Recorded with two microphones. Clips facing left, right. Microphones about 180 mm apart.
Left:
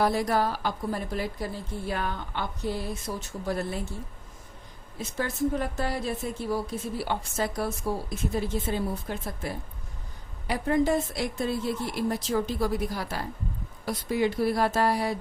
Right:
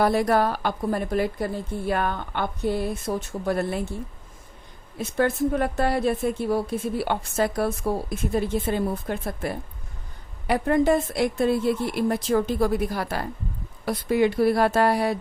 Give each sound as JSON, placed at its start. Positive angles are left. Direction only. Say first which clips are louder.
{"t": 0.0, "sound": "a woman's voice", "louder": "right 4 dB", "side_deg": -60}
{"t": 4.9, "sound": "a woman's voice", "louder": "right 7 dB", "side_deg": -60}